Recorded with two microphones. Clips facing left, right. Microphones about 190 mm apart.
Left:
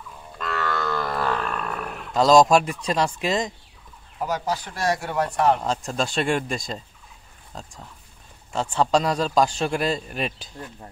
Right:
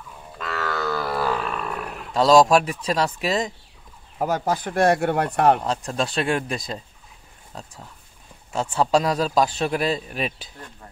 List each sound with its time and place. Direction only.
0.4 s livestock: centre (ahead or behind)
4.2 s speech: 50° right (ahead or behind)
5.6 s a man's voice: centre (ahead or behind)